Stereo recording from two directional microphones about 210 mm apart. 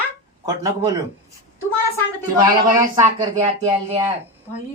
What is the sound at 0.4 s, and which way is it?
Speech, 15° right (ahead or behind).